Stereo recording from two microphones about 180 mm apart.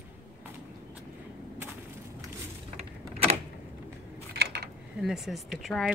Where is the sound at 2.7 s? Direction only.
35° right (ahead or behind).